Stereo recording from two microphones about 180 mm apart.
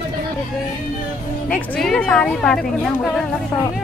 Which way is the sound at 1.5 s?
Centre (ahead or behind).